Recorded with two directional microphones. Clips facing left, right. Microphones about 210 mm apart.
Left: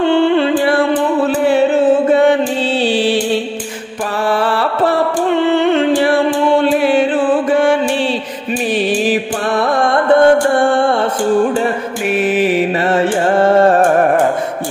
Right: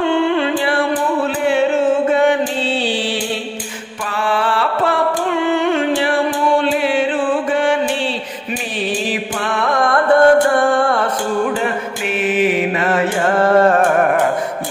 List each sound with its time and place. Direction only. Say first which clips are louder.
0.0 s music: left 4 dB; 30° left (ahead or behind)
2.0 s chant: left 3 dB; 35° left (ahead or behind)
4.3 s music: left 1 dB; 40° left (ahead or behind)
6.8 s mantra: left 4 dB; 40° left (ahead or behind)
9.5 s music: left 3 dB; 35° left (ahead or behind)
12.4 s music: left 2 dB; 30° left (ahead or behind)